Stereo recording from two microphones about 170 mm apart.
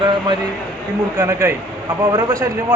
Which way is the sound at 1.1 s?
20° right (ahead or behind).